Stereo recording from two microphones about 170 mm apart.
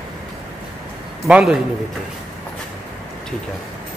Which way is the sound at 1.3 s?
5° right (ahead or behind).